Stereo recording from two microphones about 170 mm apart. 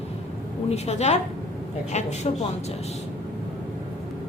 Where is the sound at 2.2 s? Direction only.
35° left (ahead or behind).